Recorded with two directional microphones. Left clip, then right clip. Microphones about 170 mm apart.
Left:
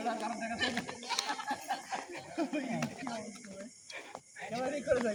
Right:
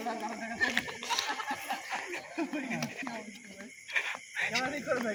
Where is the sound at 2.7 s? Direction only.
Centre (ahead or behind).